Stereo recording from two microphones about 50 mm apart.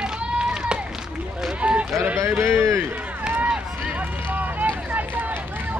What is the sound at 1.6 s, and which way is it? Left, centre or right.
Sheep, right.